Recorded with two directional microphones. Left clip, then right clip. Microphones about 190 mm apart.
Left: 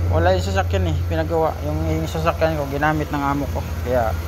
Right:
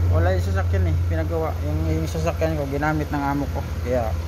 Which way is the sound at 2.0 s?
20° right (ahead or behind).